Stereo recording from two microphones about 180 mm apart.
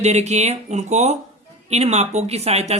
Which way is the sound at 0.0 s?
40° right (ahead or behind).